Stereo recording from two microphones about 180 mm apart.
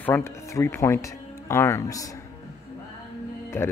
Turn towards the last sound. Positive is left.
turn(degrees=15)  # may be behind; listen again after turning